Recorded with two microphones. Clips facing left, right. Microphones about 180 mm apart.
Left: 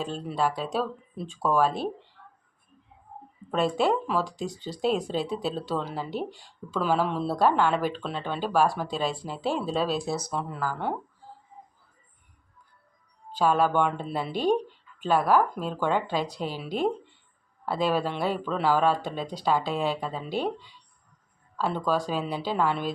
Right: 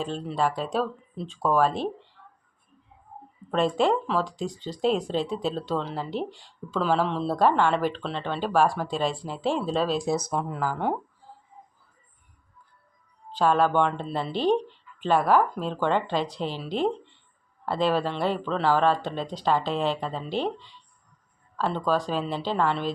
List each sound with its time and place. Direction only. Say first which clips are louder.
0.0 s speech: right 1 dB; 5° left (ahead or behind)
3.5 s speech: right 1 dB; 5° left (ahead or behind)
10.2 s speech: right 3 dB; 15° right (ahead or behind)
13.3 s speech: right 1 dB; 10° left (ahead or behind)